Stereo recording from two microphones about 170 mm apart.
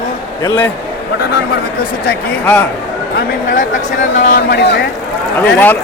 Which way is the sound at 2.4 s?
5° left (ahead or behind).